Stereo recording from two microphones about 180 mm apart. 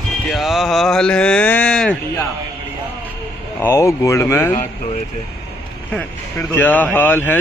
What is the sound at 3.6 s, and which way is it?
Speech, 15° left (ahead or behind).